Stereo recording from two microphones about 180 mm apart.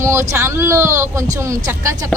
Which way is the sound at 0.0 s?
15° right (ahead or behind).